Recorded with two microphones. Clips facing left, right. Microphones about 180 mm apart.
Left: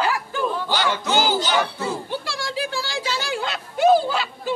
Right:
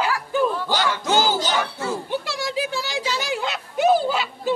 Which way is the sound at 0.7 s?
45° right (ahead or behind).